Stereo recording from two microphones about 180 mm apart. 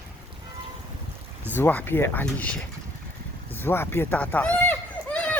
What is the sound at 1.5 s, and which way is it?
Speech, 10° left (ahead or behind).